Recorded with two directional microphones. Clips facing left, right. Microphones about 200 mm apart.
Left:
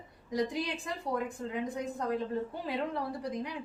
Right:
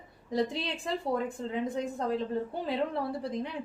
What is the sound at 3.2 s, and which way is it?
Speech, 25° right (ahead or behind).